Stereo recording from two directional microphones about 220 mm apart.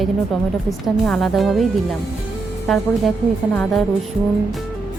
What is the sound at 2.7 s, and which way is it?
Speech, centre (ahead or behind).